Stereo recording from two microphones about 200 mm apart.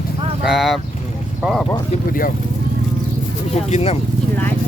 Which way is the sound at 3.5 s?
35° left (ahead or behind).